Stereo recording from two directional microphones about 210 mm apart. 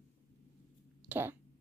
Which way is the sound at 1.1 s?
10° right (ahead or behind).